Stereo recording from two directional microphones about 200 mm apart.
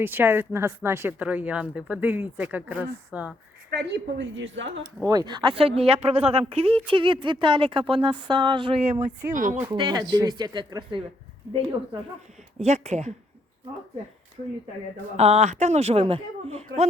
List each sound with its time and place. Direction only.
0.0 s a woman's voice: 10° right (ahead or behind)
3.7 s a woman's voice: 55° right (ahead or behind)
5.0 s a woman's voice: 20° right (ahead or behind); by 9.6 s 40° right (ahead or behind)
9.6 s speech: 25° right (ahead or behind)
12.6 s a woman's voice: 35° right (ahead or behind)
15.1 s a woman's voice: 35° right (ahead or behind)